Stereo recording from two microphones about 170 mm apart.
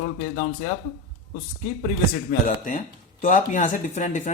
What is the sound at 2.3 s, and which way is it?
Speech, 50° left (ahead or behind).